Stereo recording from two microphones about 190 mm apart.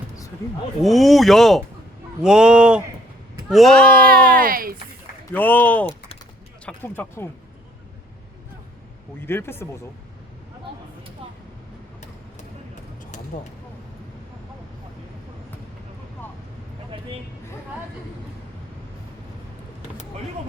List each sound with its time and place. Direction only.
0.8 s speech: centre (ahead or behind)
4.1 s speech: 50° right (ahead or behind)
5.3 s speech: 10° left (ahead or behind)
9.2 s speech: 10° left (ahead or behind)